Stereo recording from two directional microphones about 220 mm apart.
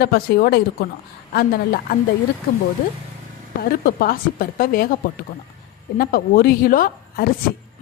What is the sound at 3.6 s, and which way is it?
A woman's voice, 45° left (ahead or behind).